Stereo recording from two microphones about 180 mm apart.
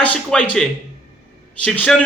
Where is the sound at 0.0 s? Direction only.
5° left (ahead or behind).